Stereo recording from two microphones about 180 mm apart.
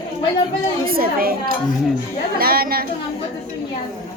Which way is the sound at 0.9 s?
55° right (ahead or behind).